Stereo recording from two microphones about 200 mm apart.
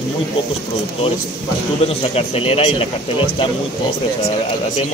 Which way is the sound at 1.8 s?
30° left (ahead or behind).